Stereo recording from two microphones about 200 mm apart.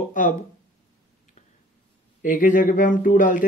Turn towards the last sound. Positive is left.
turn(degrees=40)  # may be behind; listen again after turning